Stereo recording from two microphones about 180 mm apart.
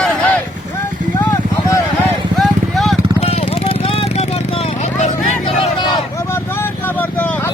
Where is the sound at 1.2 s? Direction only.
20° left (ahead or behind).